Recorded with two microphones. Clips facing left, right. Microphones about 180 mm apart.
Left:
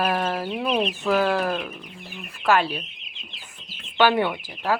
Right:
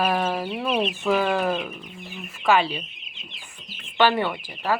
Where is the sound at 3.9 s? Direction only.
10° left (ahead or behind).